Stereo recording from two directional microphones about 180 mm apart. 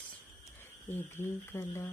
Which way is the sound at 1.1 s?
15° left (ahead or behind).